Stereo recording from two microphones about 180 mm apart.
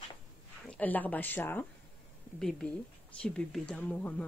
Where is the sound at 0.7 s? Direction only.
10° left (ahead or behind).